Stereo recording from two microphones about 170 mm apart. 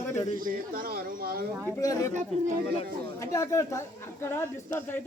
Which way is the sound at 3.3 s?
15° left (ahead or behind).